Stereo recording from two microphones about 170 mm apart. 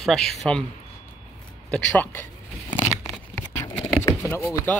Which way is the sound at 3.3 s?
90° right.